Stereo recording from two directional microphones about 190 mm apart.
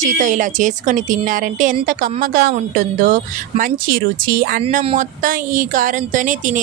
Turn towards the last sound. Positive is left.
turn(degrees=-45)  # may be behind; listen again after turning